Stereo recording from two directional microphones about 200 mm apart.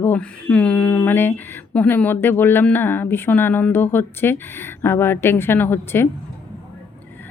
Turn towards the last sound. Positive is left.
turn(degrees=10)  # may be behind; listen again after turning